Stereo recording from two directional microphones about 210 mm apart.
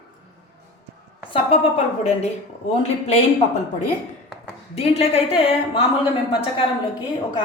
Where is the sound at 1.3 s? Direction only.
30° left (ahead or behind).